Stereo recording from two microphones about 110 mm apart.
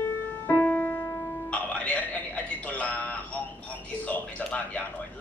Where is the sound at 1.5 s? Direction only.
10° left (ahead or behind).